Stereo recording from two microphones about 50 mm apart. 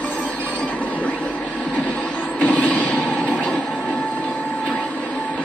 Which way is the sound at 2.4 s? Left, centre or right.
Left.